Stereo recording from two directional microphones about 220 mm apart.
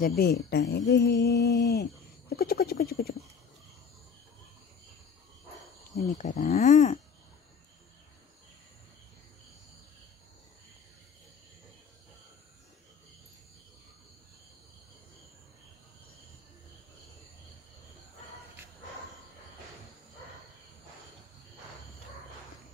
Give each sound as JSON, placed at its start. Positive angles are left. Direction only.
{"t": 0.2, "sound": "speech", "side_deg": 45}
{"t": 5.9, "sound": "speech", "side_deg": 35}